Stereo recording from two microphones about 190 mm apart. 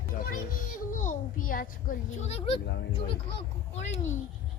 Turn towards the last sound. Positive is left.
turn(degrees=35)  # may be behind; listen again after turning